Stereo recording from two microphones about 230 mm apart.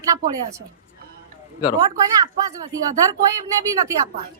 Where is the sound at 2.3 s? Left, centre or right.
Centre.